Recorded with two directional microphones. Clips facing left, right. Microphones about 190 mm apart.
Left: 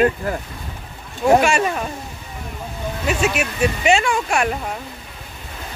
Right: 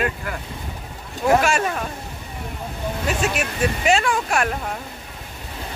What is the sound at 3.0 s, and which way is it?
Speech, 5° left (ahead or behind).